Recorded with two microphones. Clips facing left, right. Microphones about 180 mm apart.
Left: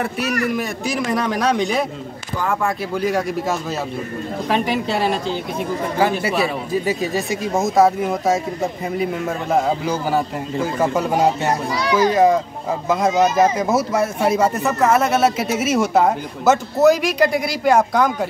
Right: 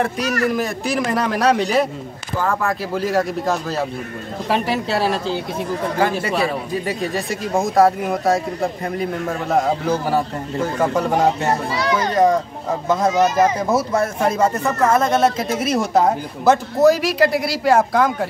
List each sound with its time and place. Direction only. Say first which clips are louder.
0.0 s speech: right 2 dB; 5° left (ahead or behind)
3.0 s speech: even; centre (ahead or behind)
10.0 s speech: even; 5° left (ahead or behind)
13.1 s speech: left 2 dB; 20° left (ahead or behind)
13.7 s speech: even; 10° left (ahead or behind)